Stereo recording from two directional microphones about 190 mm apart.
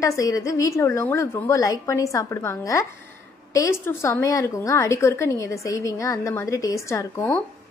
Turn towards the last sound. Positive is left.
turn(degrees=15)  # may be behind; listen again after turning